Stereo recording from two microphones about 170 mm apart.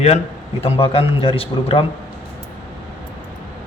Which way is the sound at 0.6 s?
35° left (ahead or behind).